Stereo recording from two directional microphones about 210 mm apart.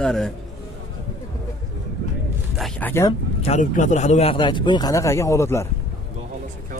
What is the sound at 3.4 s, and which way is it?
Speech, 35° left (ahead or behind).